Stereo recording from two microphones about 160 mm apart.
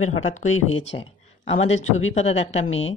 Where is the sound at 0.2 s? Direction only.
50° left (ahead or behind).